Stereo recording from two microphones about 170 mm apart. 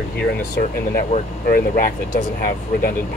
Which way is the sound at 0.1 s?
75° left (ahead or behind).